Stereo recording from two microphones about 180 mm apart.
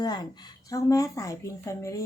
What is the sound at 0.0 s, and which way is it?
A woman's voice, 25° left (ahead or behind).